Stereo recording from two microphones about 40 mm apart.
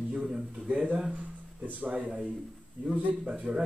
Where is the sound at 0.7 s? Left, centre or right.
Right.